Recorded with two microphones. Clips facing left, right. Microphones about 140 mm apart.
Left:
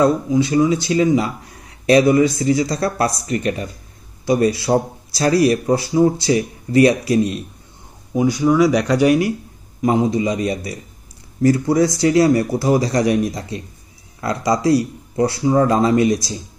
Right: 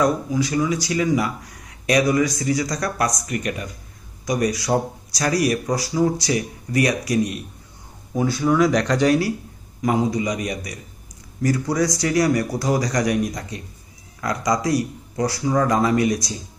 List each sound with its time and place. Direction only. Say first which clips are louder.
0.0 s speech: left 5 dB; 25° left (ahead or behind)
8.1 s speech: left 4 dB; 15° left (ahead or behind)
9.8 s speech: left 4 dB; 25° left (ahead or behind)